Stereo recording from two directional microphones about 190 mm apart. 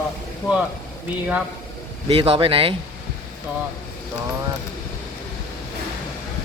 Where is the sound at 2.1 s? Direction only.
30° right (ahead or behind).